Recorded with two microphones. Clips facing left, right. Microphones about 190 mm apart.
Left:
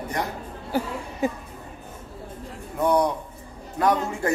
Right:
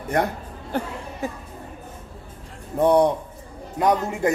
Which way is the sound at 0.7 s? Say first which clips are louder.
Left 1 dB; 5° left (ahead or behind).